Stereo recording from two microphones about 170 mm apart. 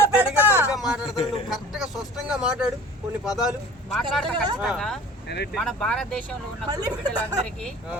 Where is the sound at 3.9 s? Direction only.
Centre (ahead or behind).